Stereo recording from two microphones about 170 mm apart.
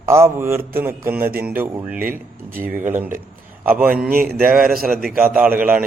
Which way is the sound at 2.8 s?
10° right (ahead or behind).